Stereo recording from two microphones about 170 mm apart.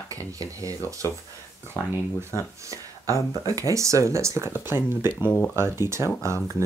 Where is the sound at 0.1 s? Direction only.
20° right (ahead or behind).